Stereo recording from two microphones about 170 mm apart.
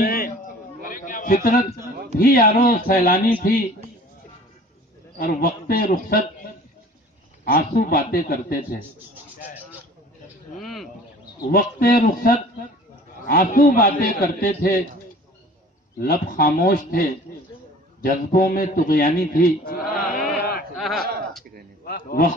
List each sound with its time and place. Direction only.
0.0 s chatter: 60° left (ahead or behind)
0.7 s a sound: 50° left (ahead or behind)
2.1 s a man's voice: 55° left (ahead or behind)
5.2 s a man's voice: 60° left (ahead or behind)
7.4 s a man's voice: 60° left (ahead or behind)
10.6 s bird: centre (ahead or behind)
11.5 s a man's voice: 60° left (ahead or behind)
16.0 s a man's voice: 60° left (ahead or behind)
18.0 s a man's voice: 60° left (ahead or behind)
20.1 s a sound: centre (ahead or behind)
21.8 s a man's voice: 65° left (ahead or behind)